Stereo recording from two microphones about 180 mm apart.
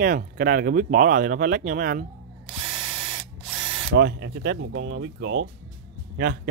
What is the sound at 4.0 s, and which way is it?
Speech, 80° right.